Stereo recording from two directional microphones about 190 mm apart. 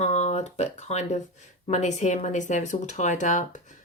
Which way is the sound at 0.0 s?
35° left (ahead or behind).